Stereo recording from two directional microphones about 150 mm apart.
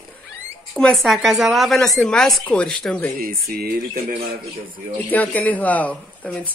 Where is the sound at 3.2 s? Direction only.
80° right.